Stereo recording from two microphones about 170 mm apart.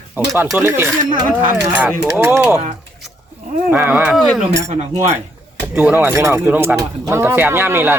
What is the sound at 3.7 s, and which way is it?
Speech, 10° right (ahead or behind).